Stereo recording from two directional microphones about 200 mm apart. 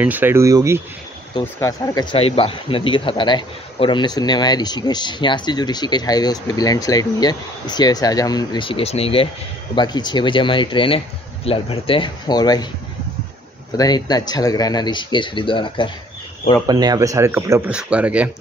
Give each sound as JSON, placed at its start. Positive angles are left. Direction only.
{"t": 0.0, "sound": "speech", "side_deg": -10}
{"t": 1.4, "sound": "speech", "side_deg": 15}
{"t": 2.1, "sound": "a man's voice", "side_deg": 30}
{"t": 13.7, "sound": "a man's voice", "side_deg": 20}
{"t": 16.6, "sound": "speech", "side_deg": -20}